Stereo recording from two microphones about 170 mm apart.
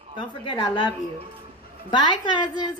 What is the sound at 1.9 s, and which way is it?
Speech, 25° left (ahead or behind).